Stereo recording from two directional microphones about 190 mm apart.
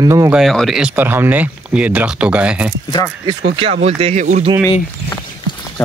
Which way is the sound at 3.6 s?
30° right (ahead or behind).